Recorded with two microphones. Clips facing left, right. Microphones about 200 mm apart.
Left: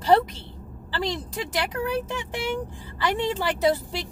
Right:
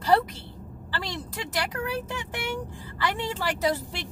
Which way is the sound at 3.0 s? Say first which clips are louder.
Left 4 dB; 20° left (ahead or behind).